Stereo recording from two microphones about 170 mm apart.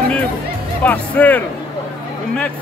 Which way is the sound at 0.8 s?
10° left (ahead or behind).